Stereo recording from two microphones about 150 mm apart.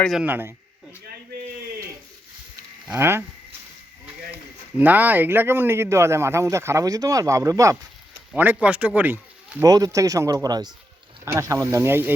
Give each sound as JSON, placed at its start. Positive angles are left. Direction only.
{"t": 0.0, "sound": "a man's voice", "side_deg": 0}
{"t": 0.3, "sound": "a man's voice", "side_deg": -15}
{"t": 2.8, "sound": "a man's voice", "side_deg": -10}
{"t": 4.8, "sound": "a man's voice", "side_deg": -10}
{"t": 8.3, "sound": "speech", "side_deg": -10}
{"t": 9.6, "sound": "a man's voice", "side_deg": -25}